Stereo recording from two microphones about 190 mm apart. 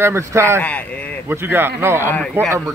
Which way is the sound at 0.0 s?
15° right (ahead or behind).